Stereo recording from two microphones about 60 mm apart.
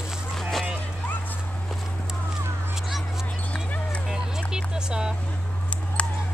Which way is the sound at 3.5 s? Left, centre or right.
Left.